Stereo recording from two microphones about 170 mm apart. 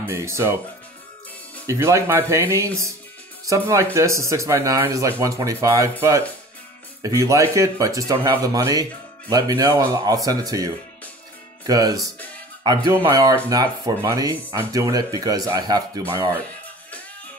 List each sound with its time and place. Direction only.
0.0 s speech: 15° right (ahead or behind)
1.7 s speech: 15° right (ahead or behind)